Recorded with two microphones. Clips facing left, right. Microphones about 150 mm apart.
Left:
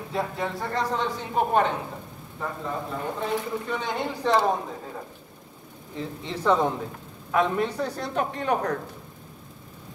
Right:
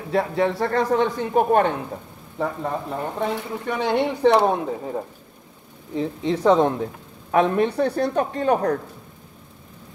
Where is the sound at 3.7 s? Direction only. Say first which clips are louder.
Right 11 dB; 75° right (ahead or behind).